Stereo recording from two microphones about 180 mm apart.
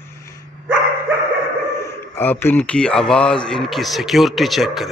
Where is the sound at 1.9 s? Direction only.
10° left (ahead or behind).